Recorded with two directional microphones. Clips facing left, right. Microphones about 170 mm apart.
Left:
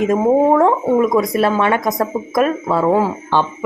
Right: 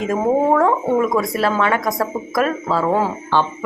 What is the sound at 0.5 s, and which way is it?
Speech, 20° left (ahead or behind).